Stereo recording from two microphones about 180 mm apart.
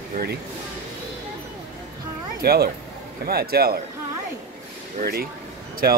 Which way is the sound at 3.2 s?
60° right (ahead or behind).